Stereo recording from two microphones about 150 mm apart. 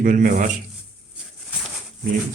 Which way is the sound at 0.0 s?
65° right (ahead or behind).